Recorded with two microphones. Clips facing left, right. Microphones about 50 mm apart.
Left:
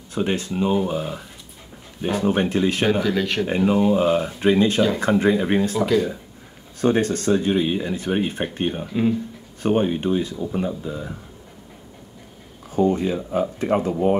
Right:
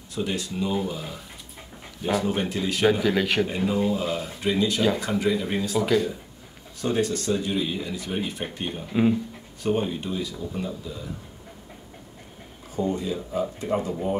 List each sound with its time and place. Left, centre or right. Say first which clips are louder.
0.1 s speech: left 5 dB; left
3.0 s speech: left 1 dB; centre
3.4 s speech: left 6 dB; left
6.8 s speech: left 5 dB; left
12.7 s speech: left 7 dB; left